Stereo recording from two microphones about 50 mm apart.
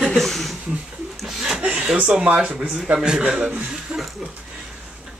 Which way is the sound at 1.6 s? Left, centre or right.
Right.